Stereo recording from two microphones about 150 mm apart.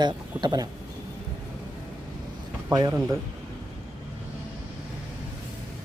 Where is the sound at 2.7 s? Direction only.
30° right (ahead or behind).